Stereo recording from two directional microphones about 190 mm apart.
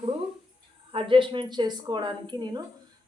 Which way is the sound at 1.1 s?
25° right (ahead or behind).